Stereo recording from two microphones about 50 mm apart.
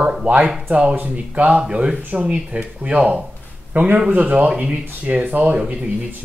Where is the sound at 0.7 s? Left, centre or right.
Right.